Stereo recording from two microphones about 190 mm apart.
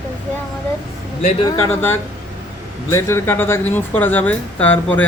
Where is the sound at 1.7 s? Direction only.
10° left (ahead or behind).